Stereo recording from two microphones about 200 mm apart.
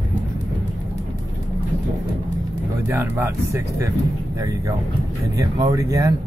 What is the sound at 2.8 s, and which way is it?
Speech, 10° right (ahead or behind).